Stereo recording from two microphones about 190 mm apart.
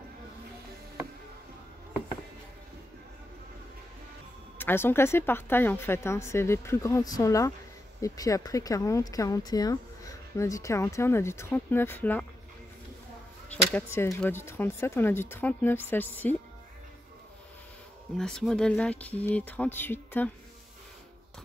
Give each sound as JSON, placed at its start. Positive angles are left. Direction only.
{"t": 4.6, "sound": "speech", "side_deg": 10}
{"t": 13.5, "sound": "speech", "side_deg": 10}
{"t": 18.1, "sound": "speech", "side_deg": 5}